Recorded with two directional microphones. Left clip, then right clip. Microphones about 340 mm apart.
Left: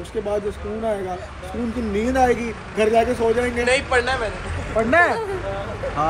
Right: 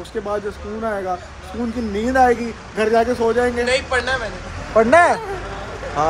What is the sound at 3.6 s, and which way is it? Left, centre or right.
Speech, left.